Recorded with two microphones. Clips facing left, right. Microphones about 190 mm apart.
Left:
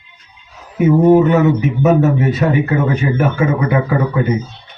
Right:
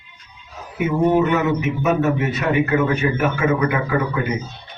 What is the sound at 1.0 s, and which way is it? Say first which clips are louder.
Speech: left 6 dB; 30° left (ahead or behind).